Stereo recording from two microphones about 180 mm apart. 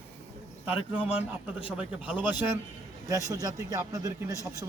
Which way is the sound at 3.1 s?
20° right (ahead or behind).